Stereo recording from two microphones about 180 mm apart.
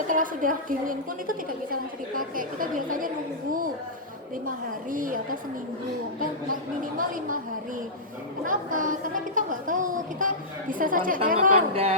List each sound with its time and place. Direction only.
0.1 s speech: 50° right (ahead or behind)
4.4 s speech: 50° right (ahead or behind)
8.4 s speech: 45° right (ahead or behind)
11.7 s speech: 35° right (ahead or behind)